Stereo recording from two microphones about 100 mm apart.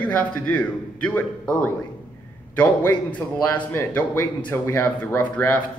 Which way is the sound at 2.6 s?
20° left (ahead or behind).